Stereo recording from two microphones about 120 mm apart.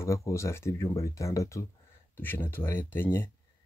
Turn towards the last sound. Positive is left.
turn(degrees=20)  # may be behind; listen again after turning